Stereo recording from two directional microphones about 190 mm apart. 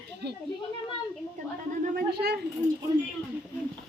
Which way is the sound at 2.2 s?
55° right (ahead or behind).